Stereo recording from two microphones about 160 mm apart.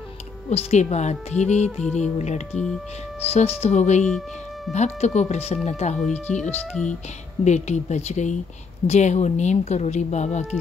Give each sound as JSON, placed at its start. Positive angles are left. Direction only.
{"t": 0.5, "sound": "speech", "side_deg": 45}
{"t": 2.5, "sound": "speech", "side_deg": 5}
{"t": 3.3, "sound": "speech", "side_deg": 40}
{"t": 5.9, "sound": "speech", "side_deg": 5}
{"t": 7.4, "sound": "speech", "side_deg": 45}